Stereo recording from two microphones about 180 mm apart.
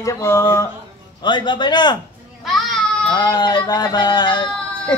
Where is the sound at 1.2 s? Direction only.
25° left (ahead or behind).